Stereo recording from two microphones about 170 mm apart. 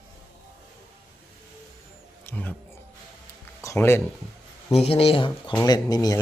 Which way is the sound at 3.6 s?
15° left (ahead or behind).